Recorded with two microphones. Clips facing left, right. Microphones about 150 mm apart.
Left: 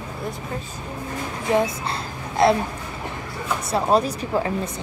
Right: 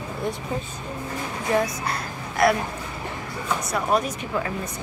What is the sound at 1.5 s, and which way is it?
Speech, 25° left (ahead or behind).